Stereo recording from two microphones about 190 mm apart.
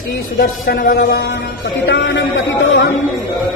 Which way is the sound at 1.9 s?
65° left (ahead or behind).